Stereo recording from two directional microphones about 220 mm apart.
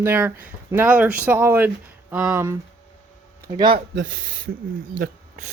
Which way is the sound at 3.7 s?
60° right (ahead or behind).